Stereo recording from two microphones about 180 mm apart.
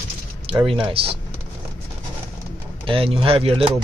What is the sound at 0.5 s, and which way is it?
Speech, 30° right (ahead or behind).